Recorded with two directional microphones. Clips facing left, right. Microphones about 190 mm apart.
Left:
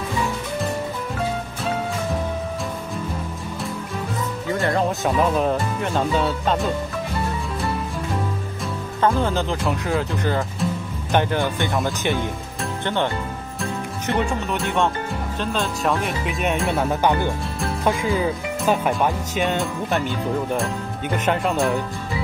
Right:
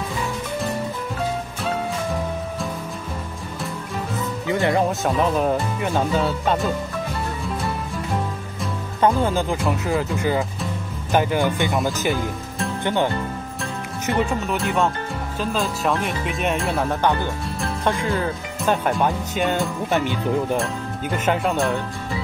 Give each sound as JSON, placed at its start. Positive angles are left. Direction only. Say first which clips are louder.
{"t": 4.5, "sound": "speech", "louder": "right 2 dB", "side_deg": -20}
{"t": 4.8, "sound": "speech", "louder": "even", "side_deg": 0}
{"t": 9.1, "sound": "speech", "louder": "right 1 dB", "side_deg": -10}
{"t": 21.3, "sound": "speech", "louder": "even", "side_deg": 0}